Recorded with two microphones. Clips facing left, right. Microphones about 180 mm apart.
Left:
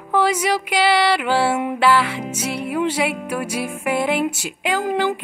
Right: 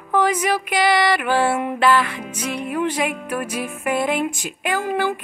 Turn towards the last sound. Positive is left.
turn(degrees=15)  # may be behind; listen again after turning